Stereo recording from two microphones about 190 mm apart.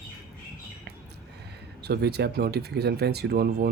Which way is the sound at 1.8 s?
60° right (ahead or behind).